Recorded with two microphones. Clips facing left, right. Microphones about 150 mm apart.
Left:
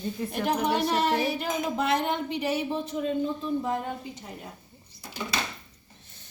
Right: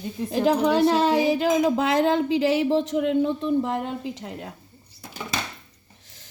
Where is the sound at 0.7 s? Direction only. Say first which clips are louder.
Right 6 dB; 90° right.